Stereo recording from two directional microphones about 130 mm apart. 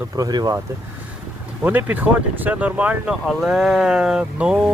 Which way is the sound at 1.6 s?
10° right (ahead or behind).